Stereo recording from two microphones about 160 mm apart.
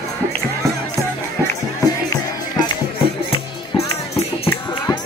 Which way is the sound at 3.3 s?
40° left (ahead or behind).